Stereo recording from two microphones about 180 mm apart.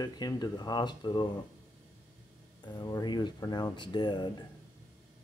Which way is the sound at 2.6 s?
25° left (ahead or behind).